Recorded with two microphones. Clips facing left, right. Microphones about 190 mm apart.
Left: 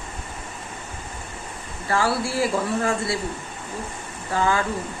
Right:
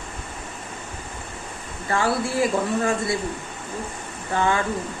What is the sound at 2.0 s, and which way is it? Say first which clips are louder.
Speech: right 2 dB; 20° right (ahead or behind).